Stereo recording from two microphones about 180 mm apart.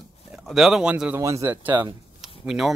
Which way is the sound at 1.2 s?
15° right (ahead or behind).